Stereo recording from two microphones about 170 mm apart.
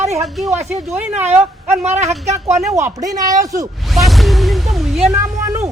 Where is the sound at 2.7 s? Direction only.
20° right (ahead or behind).